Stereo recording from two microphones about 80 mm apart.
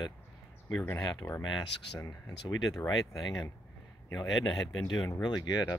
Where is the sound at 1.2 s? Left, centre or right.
Left.